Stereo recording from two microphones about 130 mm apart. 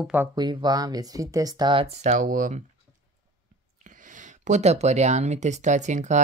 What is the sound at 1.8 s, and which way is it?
Speech, 60° right (ahead or behind).